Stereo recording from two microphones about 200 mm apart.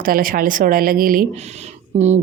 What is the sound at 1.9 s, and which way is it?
Speech, 35° right (ahead or behind).